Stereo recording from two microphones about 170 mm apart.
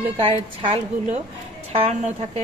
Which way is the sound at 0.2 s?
35° right (ahead or behind).